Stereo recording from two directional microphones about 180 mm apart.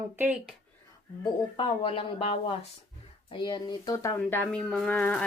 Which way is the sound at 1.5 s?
30° left (ahead or behind).